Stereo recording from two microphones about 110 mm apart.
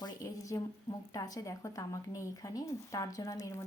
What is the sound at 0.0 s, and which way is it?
A woman's voice, 35° left (ahead or behind).